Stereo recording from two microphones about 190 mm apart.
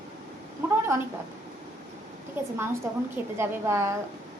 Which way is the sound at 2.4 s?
10° right (ahead or behind).